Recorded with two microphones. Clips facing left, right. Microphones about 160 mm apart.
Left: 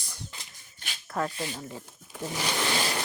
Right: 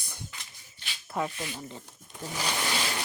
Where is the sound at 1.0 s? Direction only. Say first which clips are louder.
Left 1 dB; 10° right (ahead or behind).